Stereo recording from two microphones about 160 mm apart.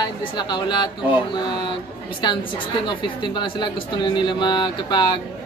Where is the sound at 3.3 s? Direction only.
30° left (ahead or behind).